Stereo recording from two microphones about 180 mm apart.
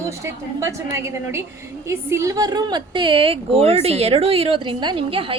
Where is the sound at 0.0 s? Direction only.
15° right (ahead or behind).